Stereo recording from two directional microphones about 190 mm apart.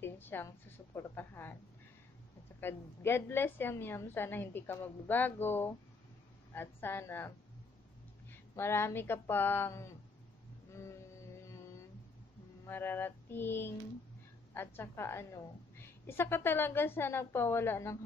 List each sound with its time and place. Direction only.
0.0 s a woman's voice: 10° left (ahead or behind)
2.6 s a woman's voice: 10° left (ahead or behind)
11.3 s music: 15° left (ahead or behind)
12.6 s a woman's voice: 10° left (ahead or behind)